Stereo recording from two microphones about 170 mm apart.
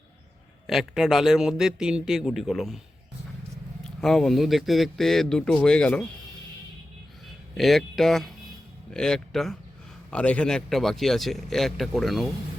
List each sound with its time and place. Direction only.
0.7 s a man's voice: centre (ahead or behind)
3.8 s a man's voice: 5° left (ahead or behind)
7.5 s a man's voice: centre (ahead or behind)